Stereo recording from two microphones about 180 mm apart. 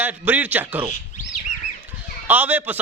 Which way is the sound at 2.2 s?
10° right (ahead or behind).